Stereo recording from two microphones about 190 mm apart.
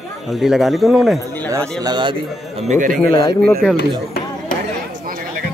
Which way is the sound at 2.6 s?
45° right (ahead or behind).